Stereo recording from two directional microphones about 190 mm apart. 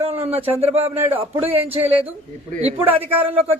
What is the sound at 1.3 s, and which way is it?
Speech, 10° right (ahead or behind).